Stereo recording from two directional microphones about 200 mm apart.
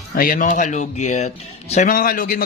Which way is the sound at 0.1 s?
45° left (ahead or behind).